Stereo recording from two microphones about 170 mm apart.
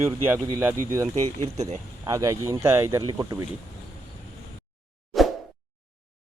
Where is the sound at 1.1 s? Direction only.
40° right (ahead or behind).